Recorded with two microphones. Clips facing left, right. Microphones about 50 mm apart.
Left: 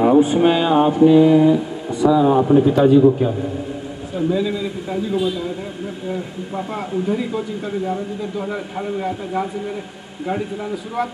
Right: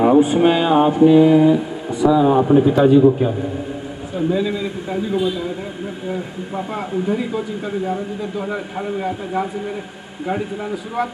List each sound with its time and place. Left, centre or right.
0.0 s mantra: centre
4.3 s a man's voice: right
6.5 s mantra: centre
10.2 s a man's voice: centre